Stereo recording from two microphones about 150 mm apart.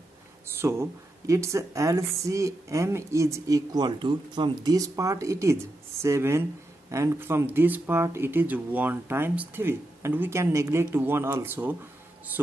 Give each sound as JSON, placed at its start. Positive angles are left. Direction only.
{"t": 0.6, "sound": "speech", "side_deg": -20}